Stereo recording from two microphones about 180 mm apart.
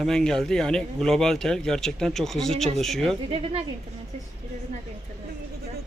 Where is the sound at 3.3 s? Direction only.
35° right (ahead or behind).